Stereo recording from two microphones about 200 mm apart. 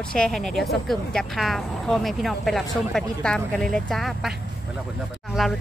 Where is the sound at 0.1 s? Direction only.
5° left (ahead or behind).